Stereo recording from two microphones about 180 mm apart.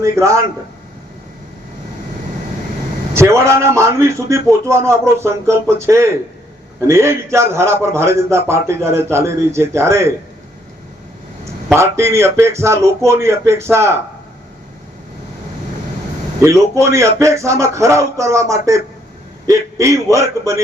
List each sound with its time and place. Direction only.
0.0 s a man's voice: 15° right (ahead or behind)
3.2 s a man's voice: 15° right (ahead or behind)
11.7 s a man's voice: 15° right (ahead or behind)
16.4 s a man's voice: 15° right (ahead or behind)